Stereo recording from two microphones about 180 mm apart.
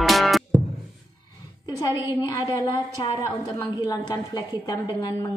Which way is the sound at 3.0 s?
20° left (ahead or behind).